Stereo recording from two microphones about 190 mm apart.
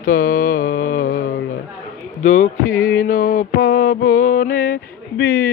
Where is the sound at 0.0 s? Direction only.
50° left (ahead or behind).